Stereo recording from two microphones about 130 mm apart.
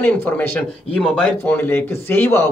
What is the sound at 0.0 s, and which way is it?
Speech, 15° left (ahead or behind).